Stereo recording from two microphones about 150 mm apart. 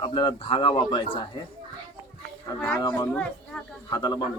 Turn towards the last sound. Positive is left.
turn(degrees=25)  # may be behind; listen again after turning